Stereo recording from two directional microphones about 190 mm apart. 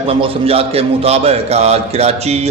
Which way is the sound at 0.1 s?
30° right (ahead or behind).